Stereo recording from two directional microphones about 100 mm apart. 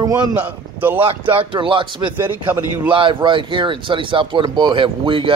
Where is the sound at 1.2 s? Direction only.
60° right (ahead or behind).